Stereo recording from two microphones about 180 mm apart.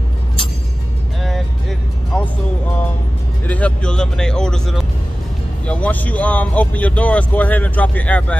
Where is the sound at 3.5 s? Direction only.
5° left (ahead or behind).